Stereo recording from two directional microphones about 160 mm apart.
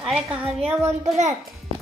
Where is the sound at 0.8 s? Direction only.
45° right (ahead or behind).